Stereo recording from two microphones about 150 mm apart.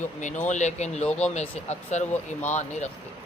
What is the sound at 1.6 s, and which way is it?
Speech, 50° left (ahead or behind).